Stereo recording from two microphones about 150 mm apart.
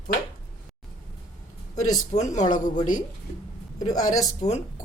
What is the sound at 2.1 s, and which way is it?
Speech, 50° left (ahead or behind).